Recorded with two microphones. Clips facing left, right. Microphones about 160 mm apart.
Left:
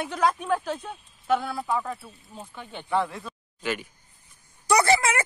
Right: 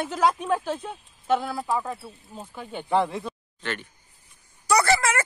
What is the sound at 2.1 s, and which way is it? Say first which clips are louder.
Speech: right 2 dB; 10° right (ahead or behind).